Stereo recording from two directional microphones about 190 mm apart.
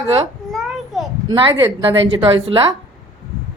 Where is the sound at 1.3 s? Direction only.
25° right (ahead or behind).